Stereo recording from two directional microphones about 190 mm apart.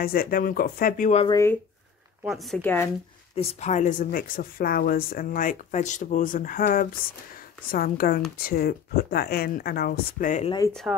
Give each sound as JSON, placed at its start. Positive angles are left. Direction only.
{"t": 0.0, "sound": "speech", "side_deg": 50}
{"t": 1.2, "sound": "speech", "side_deg": 15}
{"t": 2.2, "sound": "speech", "side_deg": 0}
{"t": 3.3, "sound": "speech", "side_deg": 35}
{"t": 10.7, "sound": "speech", "side_deg": 0}